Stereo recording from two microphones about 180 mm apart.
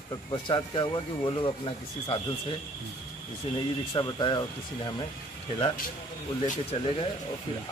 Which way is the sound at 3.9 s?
25° left (ahead or behind).